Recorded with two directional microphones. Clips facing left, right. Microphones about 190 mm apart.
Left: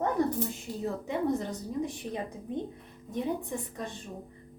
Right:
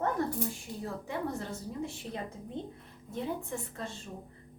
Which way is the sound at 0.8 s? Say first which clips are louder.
Left 6 dB; 20° left (ahead or behind).